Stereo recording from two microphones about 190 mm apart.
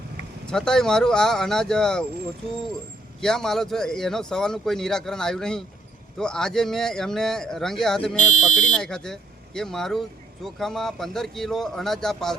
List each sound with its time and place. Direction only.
0.4 s speech: 5° left (ahead or behind)
3.2 s speech: centre (ahead or behind)
8.3 s speech: 40° left (ahead or behind)
8.7 s speech: 5° left (ahead or behind)